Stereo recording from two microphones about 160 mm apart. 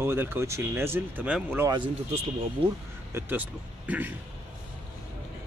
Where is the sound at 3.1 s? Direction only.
15° right (ahead or behind).